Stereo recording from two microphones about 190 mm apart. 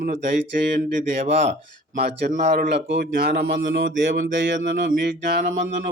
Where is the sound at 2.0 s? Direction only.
60° right (ahead or behind).